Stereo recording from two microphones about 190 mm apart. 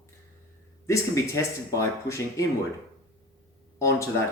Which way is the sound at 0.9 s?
15° left (ahead or behind).